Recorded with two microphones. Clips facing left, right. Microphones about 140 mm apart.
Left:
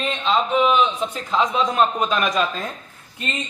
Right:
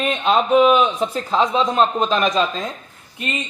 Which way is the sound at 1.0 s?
35° right (ahead or behind).